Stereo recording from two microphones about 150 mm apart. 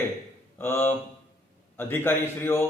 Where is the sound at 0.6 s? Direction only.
15° left (ahead or behind).